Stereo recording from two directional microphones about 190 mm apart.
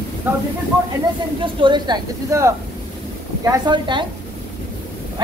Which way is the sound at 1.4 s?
25° right (ahead or behind).